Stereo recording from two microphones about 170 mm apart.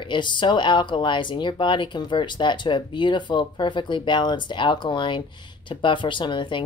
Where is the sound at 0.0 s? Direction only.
30° left (ahead or behind).